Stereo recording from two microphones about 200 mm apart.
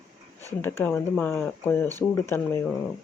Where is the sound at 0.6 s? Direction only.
10° left (ahead or behind).